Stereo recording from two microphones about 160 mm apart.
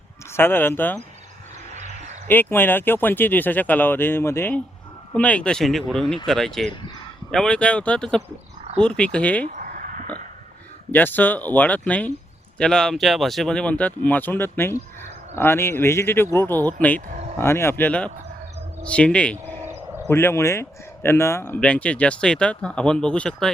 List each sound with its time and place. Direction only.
0.3 s speech: 15° left (ahead or behind)
2.2 s speech: 10° left (ahead or behind)
9.5 s a sound: 55° right (ahead or behind)
10.9 s speech: 10° left (ahead or behind)
19.5 s a sound: 20° right (ahead or behind)
20.1 s speech: 15° left (ahead or behind)